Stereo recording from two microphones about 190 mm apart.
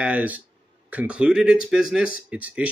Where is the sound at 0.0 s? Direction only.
10° right (ahead or behind).